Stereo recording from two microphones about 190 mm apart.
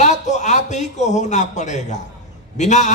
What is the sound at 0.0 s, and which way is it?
A man's voice, 40° left (ahead or behind).